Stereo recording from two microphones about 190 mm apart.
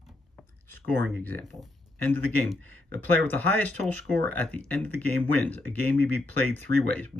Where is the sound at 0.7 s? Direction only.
10° left (ahead or behind).